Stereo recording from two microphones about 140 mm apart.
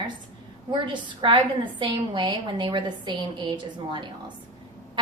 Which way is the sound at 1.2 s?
40° right (ahead or behind).